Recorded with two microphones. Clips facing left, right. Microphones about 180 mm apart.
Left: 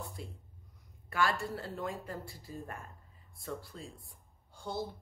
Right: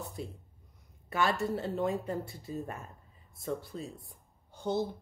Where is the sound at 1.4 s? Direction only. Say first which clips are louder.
Right 7 dB; 25° right (ahead or behind).